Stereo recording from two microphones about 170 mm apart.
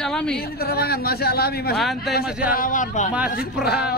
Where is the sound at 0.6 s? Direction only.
65° left (ahead or behind).